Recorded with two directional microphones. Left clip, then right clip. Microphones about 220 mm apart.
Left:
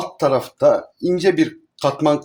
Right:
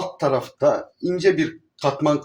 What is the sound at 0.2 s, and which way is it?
Speech, 50° left (ahead or behind).